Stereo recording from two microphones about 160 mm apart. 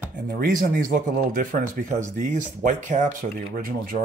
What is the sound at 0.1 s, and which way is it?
Speech, 65° right (ahead or behind).